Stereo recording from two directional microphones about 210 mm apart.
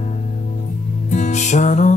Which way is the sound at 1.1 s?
35° left (ahead or behind).